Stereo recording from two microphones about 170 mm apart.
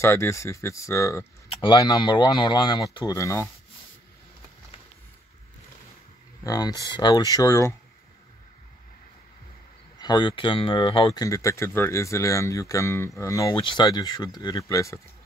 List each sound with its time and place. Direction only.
0.0 s speech: 15° left (ahead or behind)
6.4 s speech: 20° left (ahead or behind)
9.9 s speech: 25° left (ahead or behind)
11.2 s speech: 20° left (ahead or behind)